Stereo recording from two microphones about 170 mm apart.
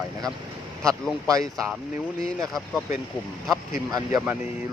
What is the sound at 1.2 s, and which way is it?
Speech, 20° right (ahead or behind).